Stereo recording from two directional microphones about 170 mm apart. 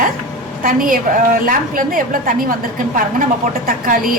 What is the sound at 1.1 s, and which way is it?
A woman's voice, 50° right (ahead or behind).